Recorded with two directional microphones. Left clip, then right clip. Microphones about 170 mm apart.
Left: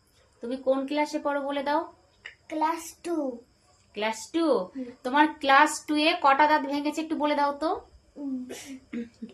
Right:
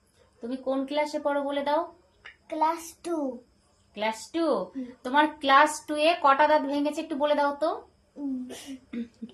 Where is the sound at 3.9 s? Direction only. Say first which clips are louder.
Left 1 dB; 20° left (ahead or behind).